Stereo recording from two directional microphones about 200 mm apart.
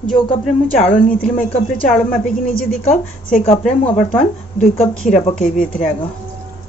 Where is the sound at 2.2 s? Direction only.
45° left (ahead or behind).